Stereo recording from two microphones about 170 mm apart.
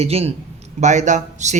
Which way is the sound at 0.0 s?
35° right (ahead or behind).